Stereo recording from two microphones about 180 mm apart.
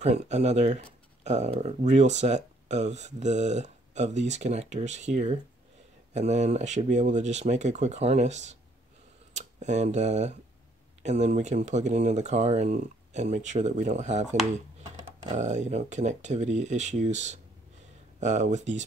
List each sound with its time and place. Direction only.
0.0 s speech: 40° right (ahead or behind)
15.3 s speech: 40° right (ahead or behind)